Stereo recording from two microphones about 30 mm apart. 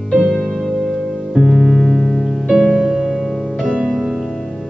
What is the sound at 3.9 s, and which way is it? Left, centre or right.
Music, centre.